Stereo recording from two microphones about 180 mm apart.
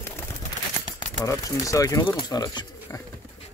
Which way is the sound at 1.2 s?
20° left (ahead or behind).